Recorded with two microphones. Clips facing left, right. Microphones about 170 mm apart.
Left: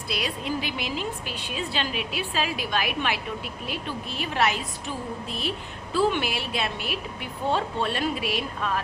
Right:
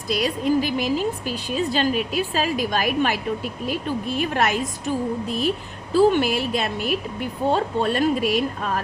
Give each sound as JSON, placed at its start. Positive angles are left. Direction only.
{"t": 0.1, "sound": "a woman's voice", "side_deg": -45}